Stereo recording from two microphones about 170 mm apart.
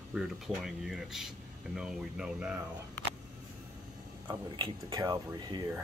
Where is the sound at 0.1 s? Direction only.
5° right (ahead or behind).